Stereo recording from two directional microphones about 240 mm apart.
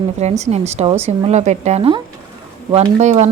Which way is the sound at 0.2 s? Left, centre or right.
Right.